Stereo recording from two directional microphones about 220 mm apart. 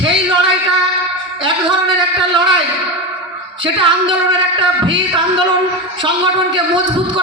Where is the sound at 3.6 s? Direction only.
20° right (ahead or behind).